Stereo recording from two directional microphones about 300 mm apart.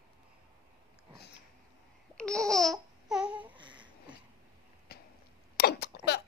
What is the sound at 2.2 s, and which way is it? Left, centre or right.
Babbling, centre.